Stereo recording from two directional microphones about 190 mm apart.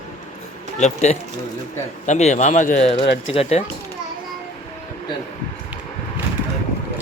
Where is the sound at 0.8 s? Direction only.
35° left (ahead or behind).